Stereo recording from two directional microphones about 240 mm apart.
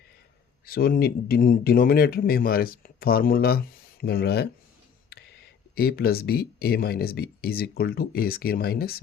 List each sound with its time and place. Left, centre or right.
0.6 s speech: left
5.7 s speech: left